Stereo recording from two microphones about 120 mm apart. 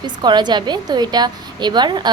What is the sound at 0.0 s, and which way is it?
A woman's voice, 40° right (ahead or behind).